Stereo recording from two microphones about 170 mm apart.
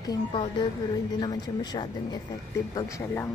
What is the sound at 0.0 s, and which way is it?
Speech, 25° left (ahead or behind).